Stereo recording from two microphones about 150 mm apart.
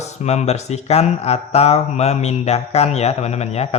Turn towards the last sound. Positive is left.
turn(degrees=45)  # may be behind; listen again after turning